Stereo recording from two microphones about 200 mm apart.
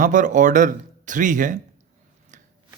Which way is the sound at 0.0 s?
40° right (ahead or behind).